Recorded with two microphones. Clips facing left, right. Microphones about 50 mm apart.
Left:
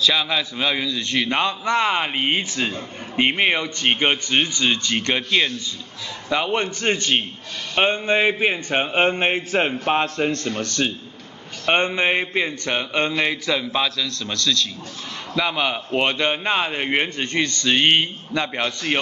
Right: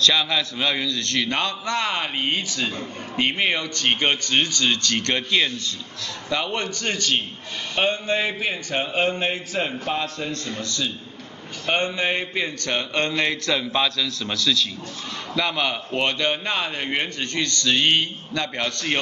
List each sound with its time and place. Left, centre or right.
0.0 s a man's voice: centre; by 10.9 s left
11.6 s a man's voice: left; by 14.7 s centre
15.3 s a man's voice: centre